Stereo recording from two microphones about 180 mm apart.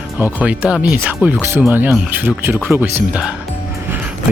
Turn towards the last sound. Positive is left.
turn(degrees=-5)  # may be behind; listen again after turning